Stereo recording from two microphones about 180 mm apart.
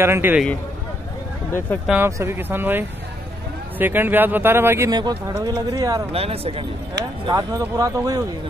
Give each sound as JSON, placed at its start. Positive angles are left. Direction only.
{"t": 0.0, "sound": "speech", "side_deg": -10}
{"t": 1.9, "sound": "speech", "side_deg": -15}
{"t": 6.1, "sound": "speech", "side_deg": -35}
{"t": 7.2, "sound": "speech", "side_deg": -20}